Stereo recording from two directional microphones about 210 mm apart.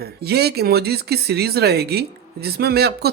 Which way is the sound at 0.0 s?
50° right (ahead or behind).